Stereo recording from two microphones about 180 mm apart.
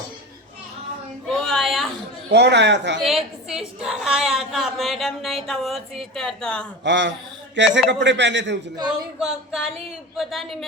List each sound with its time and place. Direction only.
1.3 s a sound: 5° left (ahead or behind)
2.3 s speech: 70° right (ahead or behind)
3.0 s a woman's voice: centre (ahead or behind)
6.8 s a man's voice: 80° right
9.1 s a woman's voice: 5° right (ahead or behind)